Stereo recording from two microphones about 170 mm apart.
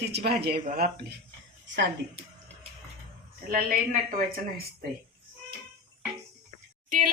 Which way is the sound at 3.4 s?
55° right (ahead or behind).